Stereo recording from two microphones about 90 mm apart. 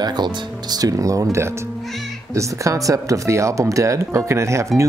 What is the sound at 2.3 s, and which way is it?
Speech, 35° right (ahead or behind).